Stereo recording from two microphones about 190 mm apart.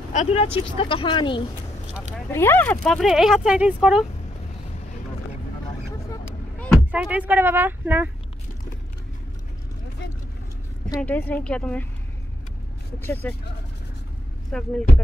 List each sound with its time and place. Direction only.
0.1 s speech: 35° left (ahead or behind)
2.3 s speech: 10° left (ahead or behind); by 4.0 s 5° right (ahead or behind)
6.9 s speech: 10° right (ahead or behind)
11.0 s a woman's voice: 10° left (ahead or behind)
13.0 s a woman's voice: 10° left (ahead or behind)
14.5 s speech: 5° left (ahead or behind)